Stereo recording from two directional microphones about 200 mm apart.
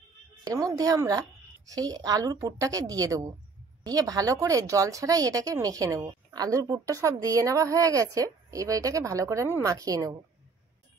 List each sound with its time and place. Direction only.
0.4 s speech: 15° right (ahead or behind)